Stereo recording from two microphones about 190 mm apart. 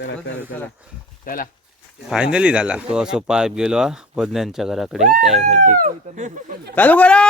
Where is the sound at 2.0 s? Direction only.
5° right (ahead or behind).